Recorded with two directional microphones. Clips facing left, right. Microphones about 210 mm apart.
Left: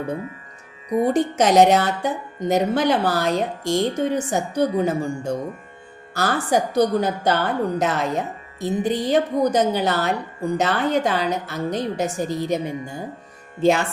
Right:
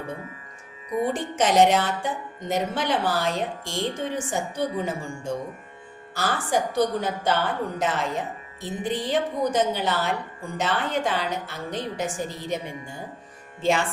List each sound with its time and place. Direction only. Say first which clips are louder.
0.9 s speech: left 7 dB; 40° left (ahead or behind)